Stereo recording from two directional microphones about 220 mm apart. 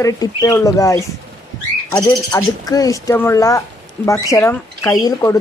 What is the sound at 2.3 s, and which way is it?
Speech, 15° left (ahead or behind).